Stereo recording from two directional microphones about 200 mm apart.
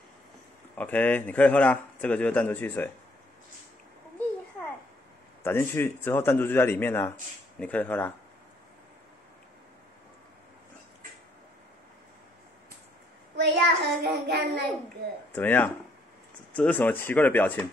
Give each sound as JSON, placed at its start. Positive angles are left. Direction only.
{"t": 0.7, "sound": "a man's voice", "side_deg": 10}
{"t": 5.4, "sound": "a man's voice", "side_deg": 10}
{"t": 13.4, "sound": "child singing", "side_deg": -55}
{"t": 15.3, "sound": "a man's voice", "side_deg": 10}